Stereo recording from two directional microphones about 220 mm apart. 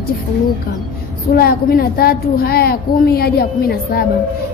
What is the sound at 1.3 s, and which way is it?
A woman's voice, 45° left (ahead or behind).